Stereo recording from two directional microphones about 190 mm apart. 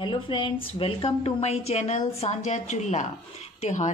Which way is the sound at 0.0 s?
25° left (ahead or behind).